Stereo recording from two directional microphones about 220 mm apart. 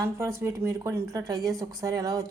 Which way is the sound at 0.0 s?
15° right (ahead or behind).